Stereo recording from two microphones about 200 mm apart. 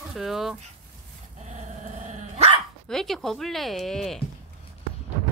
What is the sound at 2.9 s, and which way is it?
Speech, centre (ahead or behind).